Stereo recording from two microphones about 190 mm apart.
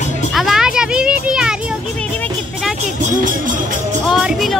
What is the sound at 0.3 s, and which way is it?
Children playing, centre (ahead or behind).